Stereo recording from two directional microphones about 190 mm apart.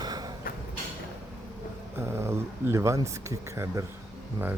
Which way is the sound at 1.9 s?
15° right (ahead or behind).